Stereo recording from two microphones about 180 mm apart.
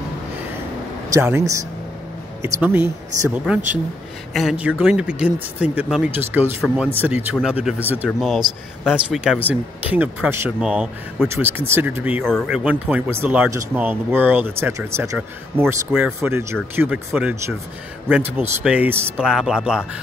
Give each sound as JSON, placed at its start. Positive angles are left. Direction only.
{"t": 1.1, "sound": "speech", "side_deg": -15}
{"t": 15.6, "sound": "speech", "side_deg": 0}
{"t": 16.2, "sound": "speech", "side_deg": -15}